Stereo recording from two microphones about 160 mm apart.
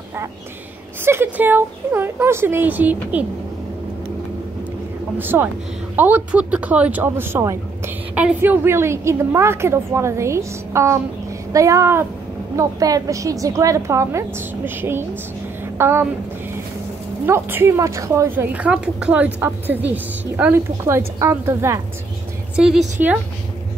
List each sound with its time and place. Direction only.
1.0 s speech: 15° right (ahead or behind)
5.1 s a woman's voice: 10° right (ahead or behind)
17.3 s speech: 15° right (ahead or behind)
22.6 s a woman's voice: 5° right (ahead or behind)